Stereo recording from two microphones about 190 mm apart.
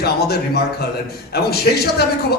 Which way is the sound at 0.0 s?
55° left (ahead or behind).